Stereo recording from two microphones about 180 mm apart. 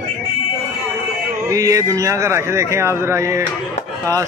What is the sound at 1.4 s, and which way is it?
Speech, 20° right (ahead or behind).